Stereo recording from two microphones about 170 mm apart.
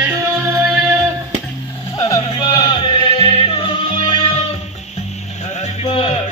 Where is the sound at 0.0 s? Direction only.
15° right (ahead or behind).